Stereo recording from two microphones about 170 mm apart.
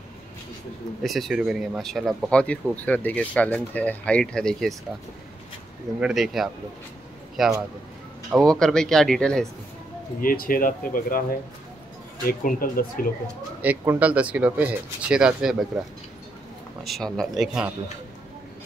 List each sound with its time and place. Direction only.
1.0 s speech: centre (ahead or behind)
5.9 s speech: 5° right (ahead or behind)
10.2 s speech: 55° left (ahead or behind)
12.3 s speech: 60° left (ahead or behind)
13.6 s speech: 10° right (ahead or behind)
16.8 s speech: centre (ahead or behind)